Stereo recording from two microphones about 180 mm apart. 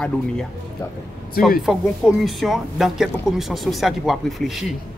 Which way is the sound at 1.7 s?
Centre (ahead or behind).